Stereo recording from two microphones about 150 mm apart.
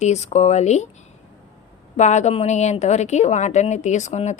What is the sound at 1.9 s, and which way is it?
A woman's voice, 50° left (ahead or behind).